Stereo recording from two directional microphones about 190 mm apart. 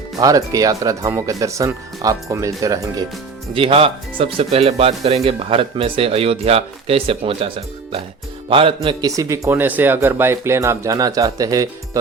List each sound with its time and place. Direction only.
0.2 s speech: 20° right (ahead or behind)
3.5 s speech: 30° right (ahead or behind)